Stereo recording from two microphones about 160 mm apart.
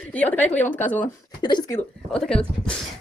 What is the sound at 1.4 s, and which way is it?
Speech, 30° left (ahead or behind).